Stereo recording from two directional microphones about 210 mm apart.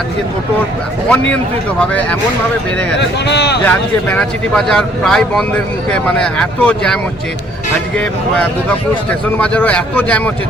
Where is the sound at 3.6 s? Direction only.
5° left (ahead or behind).